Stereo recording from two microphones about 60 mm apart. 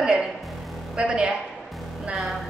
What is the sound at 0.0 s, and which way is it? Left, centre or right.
Music, centre.